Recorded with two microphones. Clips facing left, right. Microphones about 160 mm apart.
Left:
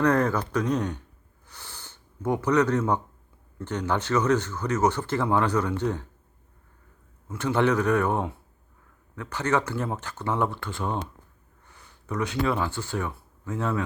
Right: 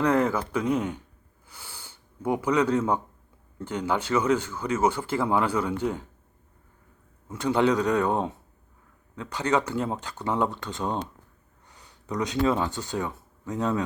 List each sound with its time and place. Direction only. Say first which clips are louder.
0.0 s speech: even; 10° right (ahead or behind)
1.5 s a sound: even; 10° right (ahead or behind)
3.6 s speech: even; 10° right (ahead or behind)
7.3 s speech: right 1 dB; 15° right (ahead or behind)